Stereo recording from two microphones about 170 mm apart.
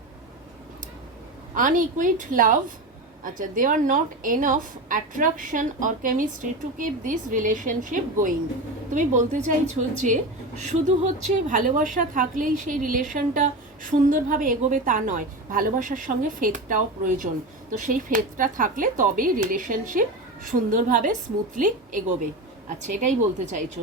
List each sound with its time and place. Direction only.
1.5 s a woman's voice: 50° right (ahead or behind)
10.6 s a woman's voice: 45° right (ahead or behind)